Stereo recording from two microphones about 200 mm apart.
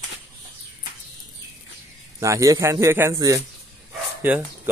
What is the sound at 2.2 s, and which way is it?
A man's voice, 15° right (ahead or behind).